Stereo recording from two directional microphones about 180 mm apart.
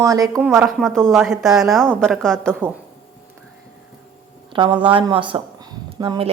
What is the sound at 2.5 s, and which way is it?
Speech, 10° right (ahead or behind).